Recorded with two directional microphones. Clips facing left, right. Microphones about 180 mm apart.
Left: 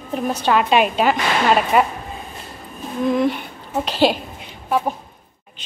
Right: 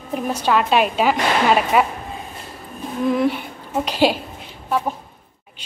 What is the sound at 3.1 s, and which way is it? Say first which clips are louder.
A woman's voice: even; 10° right (ahead or behind).